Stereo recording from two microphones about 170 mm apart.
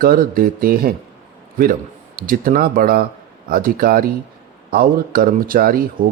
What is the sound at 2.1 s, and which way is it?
Speech, 55° right (ahead or behind).